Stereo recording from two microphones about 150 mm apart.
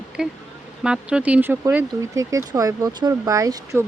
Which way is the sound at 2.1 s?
20° right (ahead or behind).